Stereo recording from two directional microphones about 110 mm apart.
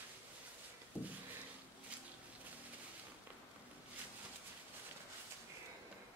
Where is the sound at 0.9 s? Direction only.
15° right (ahead or behind).